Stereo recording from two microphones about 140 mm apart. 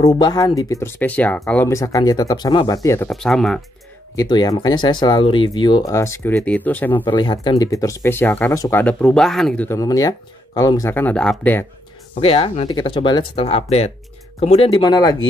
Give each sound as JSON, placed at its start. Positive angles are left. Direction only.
{"t": 0.2, "sound": "speech", "side_deg": 30}
{"t": 1.7, "sound": "speech", "side_deg": 20}
{"t": 3.1, "sound": "speech", "side_deg": 5}
{"t": 4.1, "sound": "speech", "side_deg": 25}
{"t": 6.3, "sound": "speech", "side_deg": 10}
{"t": 7.2, "sound": "speech", "side_deg": 35}
{"t": 8.8, "sound": "speech", "side_deg": 5}
{"t": 9.7, "sound": "speech", "side_deg": 25}
{"t": 12.2, "sound": "speech", "side_deg": 40}
{"t": 14.7, "sound": "speech", "side_deg": 30}